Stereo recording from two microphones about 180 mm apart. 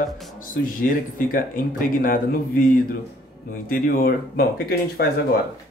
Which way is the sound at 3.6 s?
55° left (ahead or behind).